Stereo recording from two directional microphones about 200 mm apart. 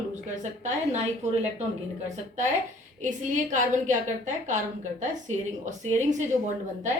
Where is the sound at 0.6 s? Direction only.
35° right (ahead or behind).